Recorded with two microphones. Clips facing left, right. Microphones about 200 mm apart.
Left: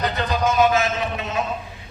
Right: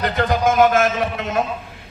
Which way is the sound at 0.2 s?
50° right (ahead or behind).